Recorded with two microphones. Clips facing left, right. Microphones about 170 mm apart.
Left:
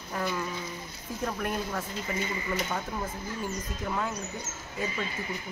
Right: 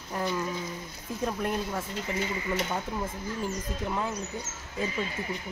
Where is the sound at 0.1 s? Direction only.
15° right (ahead or behind).